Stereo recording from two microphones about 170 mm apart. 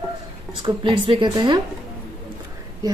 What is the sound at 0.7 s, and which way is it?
Speech, 30° right (ahead or behind).